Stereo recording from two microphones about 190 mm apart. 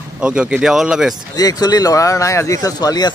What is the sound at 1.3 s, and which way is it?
Speech, 20° left (ahead or behind).